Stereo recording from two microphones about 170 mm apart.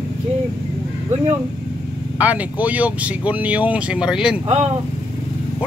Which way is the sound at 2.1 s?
10° right (ahead or behind).